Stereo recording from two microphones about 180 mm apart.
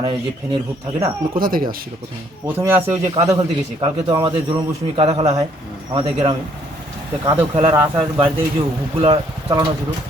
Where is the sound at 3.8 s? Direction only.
25° right (ahead or behind).